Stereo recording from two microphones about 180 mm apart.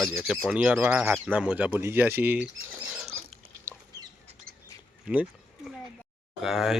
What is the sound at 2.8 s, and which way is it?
Rodents, 5° right (ahead or behind).